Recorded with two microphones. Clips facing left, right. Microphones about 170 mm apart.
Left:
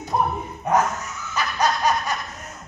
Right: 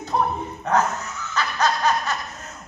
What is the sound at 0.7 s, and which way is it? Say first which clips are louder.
Speech: left 1 dB; 10° left (ahead or behind).